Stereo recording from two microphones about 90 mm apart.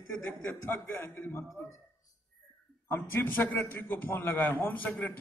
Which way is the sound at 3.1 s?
25° left (ahead or behind).